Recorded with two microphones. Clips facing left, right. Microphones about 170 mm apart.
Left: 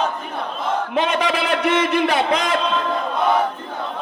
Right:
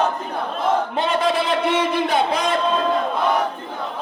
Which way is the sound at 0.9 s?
85° left.